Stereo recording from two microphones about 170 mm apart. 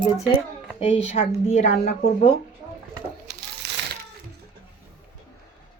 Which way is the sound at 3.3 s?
90° right.